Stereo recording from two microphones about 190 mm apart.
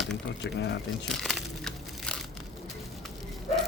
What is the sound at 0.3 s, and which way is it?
Speech, 65° left (ahead or behind).